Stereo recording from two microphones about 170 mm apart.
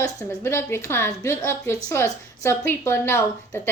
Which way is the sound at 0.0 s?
20° left (ahead or behind).